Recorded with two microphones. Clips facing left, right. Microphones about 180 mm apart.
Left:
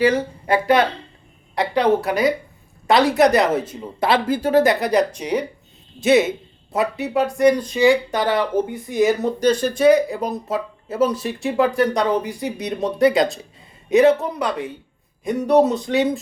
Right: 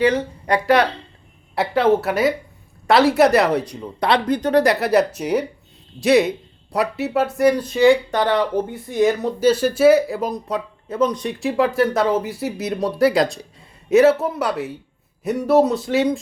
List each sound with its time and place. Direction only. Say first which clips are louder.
0.0 s speech: even; 10° left (ahead or behind)
8.7 s speech: even; 15° left (ahead or behind)
9.2 s speech: right 1 dB; 5° right (ahead or behind)